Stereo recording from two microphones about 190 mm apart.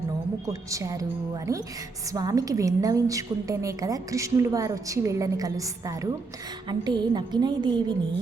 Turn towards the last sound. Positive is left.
turn(degrees=-25)  # may be behind; listen again after turning